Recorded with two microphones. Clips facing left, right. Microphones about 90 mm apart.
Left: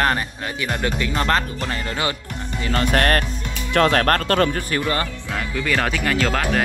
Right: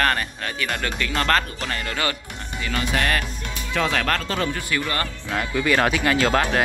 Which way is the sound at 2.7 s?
50° left (ahead or behind).